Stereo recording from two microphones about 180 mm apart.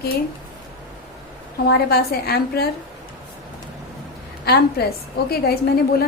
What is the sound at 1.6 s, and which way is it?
A woman's voice, 60° left (ahead or behind).